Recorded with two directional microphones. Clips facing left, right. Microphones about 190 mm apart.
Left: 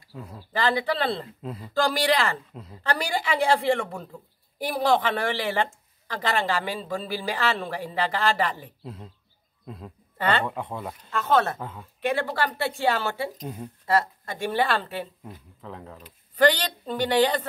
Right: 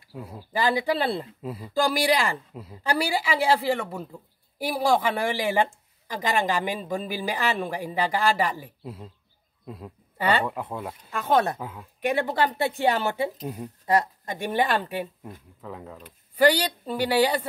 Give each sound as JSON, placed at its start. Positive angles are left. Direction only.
{"t": 0.1, "sound": "speech", "side_deg": -10}
{"t": 11.6, "sound": "speech", "side_deg": 0}
{"t": 12.0, "sound": "speech", "side_deg": -15}
{"t": 13.4, "sound": "speech", "side_deg": -5}
{"t": 13.8, "sound": "speech", "side_deg": -15}
{"t": 15.6, "sound": "speech", "side_deg": -5}